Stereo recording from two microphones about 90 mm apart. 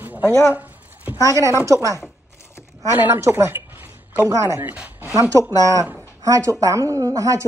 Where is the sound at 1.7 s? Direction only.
35° right (ahead or behind).